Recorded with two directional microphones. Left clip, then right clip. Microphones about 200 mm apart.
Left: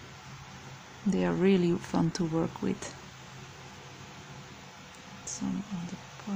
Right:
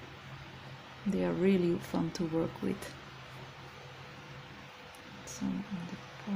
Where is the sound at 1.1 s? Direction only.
20° left (ahead or behind).